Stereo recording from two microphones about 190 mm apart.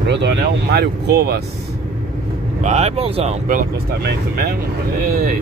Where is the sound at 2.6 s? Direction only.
35° right (ahead or behind).